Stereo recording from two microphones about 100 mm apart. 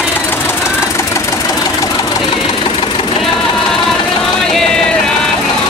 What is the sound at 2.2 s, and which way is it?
Engine knocking, 60° left (ahead or behind).